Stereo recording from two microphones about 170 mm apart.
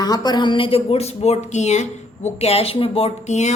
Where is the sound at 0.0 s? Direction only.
25° left (ahead or behind).